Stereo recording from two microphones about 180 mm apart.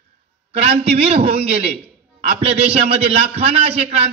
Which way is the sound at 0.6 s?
35° right (ahead or behind).